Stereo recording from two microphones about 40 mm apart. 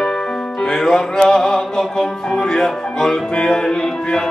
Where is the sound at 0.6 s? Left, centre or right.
Centre.